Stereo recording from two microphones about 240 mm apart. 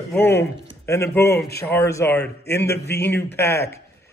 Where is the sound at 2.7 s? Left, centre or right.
Left.